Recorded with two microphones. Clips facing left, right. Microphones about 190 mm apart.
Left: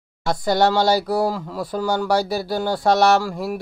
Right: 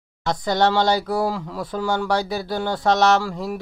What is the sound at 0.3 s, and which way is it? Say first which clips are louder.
Speech: left 2 dB; 10° left (ahead or behind).